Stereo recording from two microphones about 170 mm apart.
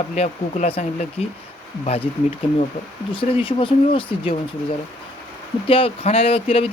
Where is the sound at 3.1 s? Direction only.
30° left (ahead or behind).